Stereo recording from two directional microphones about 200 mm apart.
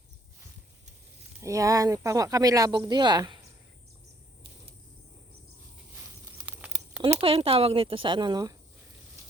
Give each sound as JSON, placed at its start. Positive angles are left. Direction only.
{"t": 1.4, "sound": "speech", "side_deg": -15}
{"t": 6.4, "sound": "a sound", "side_deg": -5}
{"t": 7.2, "sound": "speech", "side_deg": -25}